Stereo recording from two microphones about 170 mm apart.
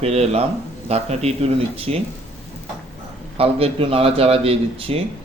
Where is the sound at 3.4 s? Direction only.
35° right (ahead or behind).